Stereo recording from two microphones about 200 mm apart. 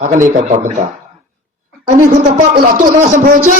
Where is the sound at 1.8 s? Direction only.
40° right (ahead or behind).